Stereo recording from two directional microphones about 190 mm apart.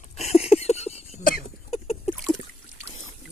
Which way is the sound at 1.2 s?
50° left (ahead or behind).